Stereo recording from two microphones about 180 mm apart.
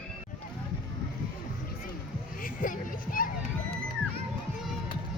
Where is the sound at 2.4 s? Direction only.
50° left (ahead or behind).